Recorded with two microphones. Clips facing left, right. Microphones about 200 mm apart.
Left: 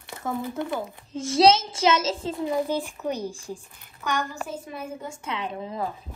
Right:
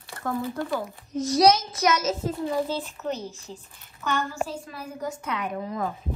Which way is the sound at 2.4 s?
15° left (ahead or behind).